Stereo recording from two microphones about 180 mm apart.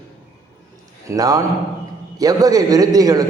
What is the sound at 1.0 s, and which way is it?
A man's voice, 20° right (ahead or behind).